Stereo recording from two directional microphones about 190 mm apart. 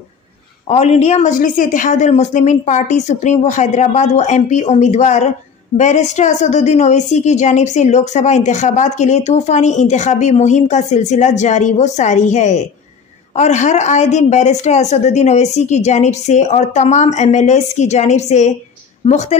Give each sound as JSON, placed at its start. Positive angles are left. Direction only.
{"t": 0.7, "sound": "a woman's voice", "side_deg": 35}